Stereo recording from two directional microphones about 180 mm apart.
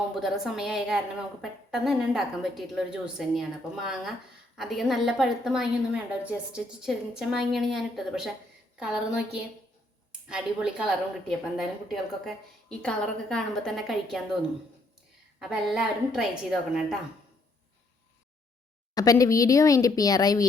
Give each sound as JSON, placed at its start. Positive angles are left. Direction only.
{"t": 0.2, "sound": "a woman's voice", "side_deg": 0}
{"t": 15.4, "sound": "a woman's voice", "side_deg": -5}
{"t": 18.9, "sound": "speech", "side_deg": 20}